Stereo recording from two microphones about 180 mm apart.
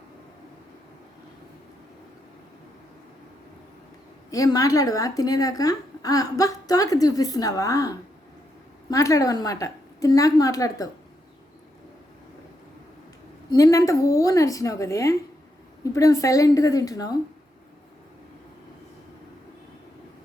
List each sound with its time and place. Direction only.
4.3 s a woman's voice: 20° left (ahead or behind)
13.5 s a woman's voice: 20° left (ahead or behind)